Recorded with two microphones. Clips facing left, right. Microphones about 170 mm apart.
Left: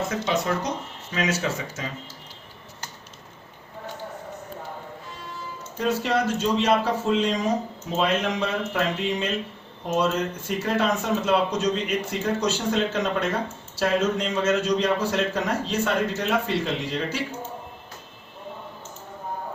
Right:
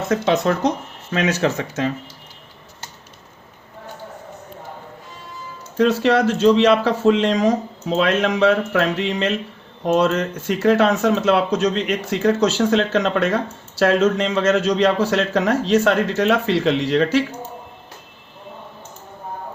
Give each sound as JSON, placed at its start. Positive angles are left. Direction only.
{"t": 0.1, "sound": "speech", "side_deg": -70}
{"t": 5.7, "sound": "a man's voice", "side_deg": -90}